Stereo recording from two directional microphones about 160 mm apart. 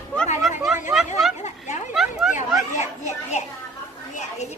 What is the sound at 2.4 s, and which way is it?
Speech, 45° left (ahead or behind).